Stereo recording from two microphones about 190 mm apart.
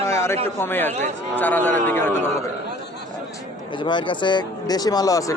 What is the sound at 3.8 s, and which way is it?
Speech, 25° left (ahead or behind).